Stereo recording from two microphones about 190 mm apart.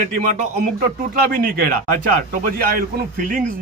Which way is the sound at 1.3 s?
50° right (ahead or behind).